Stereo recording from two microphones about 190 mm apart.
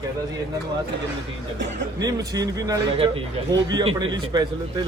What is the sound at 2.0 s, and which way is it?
A man's voice, 20° right (ahead or behind).